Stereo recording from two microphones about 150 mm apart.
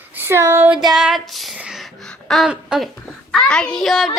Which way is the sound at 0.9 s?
Centre (ahead or behind).